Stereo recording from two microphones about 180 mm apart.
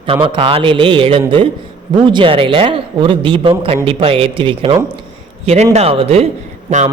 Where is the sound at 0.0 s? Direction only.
30° right (ahead or behind).